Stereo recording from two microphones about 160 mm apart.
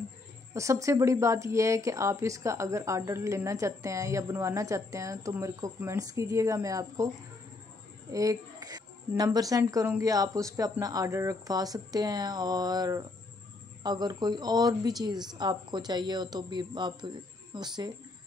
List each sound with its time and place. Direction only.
0.6 s a woman's voice: 20° right (ahead or behind)
8.1 s a woman's voice: 20° right (ahead or behind)